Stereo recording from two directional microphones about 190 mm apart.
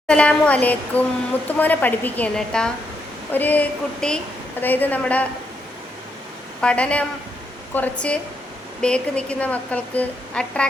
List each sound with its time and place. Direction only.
0.1 s a woman's voice: 5° left (ahead or behind)
6.6 s a woman's voice: 5° left (ahead or behind)